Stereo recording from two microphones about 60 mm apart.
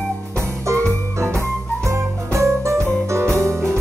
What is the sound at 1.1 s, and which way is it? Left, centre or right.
Music, right.